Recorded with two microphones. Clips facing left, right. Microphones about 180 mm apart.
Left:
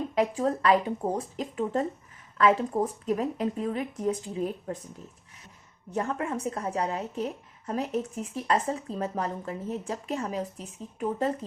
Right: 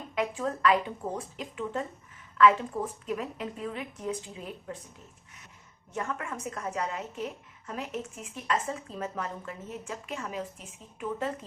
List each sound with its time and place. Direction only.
0.1 s speech: 35° left (ahead or behind)
5.9 s speech: 35° left (ahead or behind)